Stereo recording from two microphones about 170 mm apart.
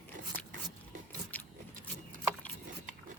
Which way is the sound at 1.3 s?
10° left (ahead or behind).